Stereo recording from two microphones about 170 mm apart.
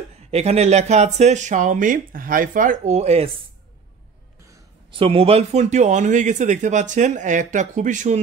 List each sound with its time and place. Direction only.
0.3 s speech: 40° right (ahead or behind)
4.9 s speech: 35° right (ahead or behind)